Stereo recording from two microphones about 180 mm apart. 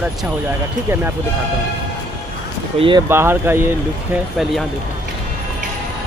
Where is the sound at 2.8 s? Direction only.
35° right (ahead or behind).